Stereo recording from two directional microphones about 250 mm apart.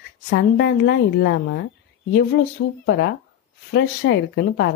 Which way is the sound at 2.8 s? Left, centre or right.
Left.